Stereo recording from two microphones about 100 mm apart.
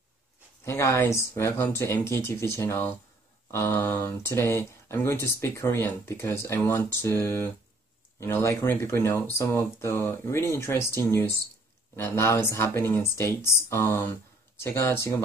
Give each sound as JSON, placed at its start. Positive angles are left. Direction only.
{"t": 0.7, "sound": "speech", "side_deg": 25}